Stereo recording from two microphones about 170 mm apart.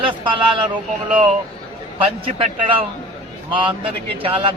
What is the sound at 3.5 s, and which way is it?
Speech, 30° right (ahead or behind).